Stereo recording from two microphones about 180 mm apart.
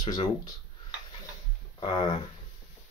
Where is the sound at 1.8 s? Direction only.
25° left (ahead or behind).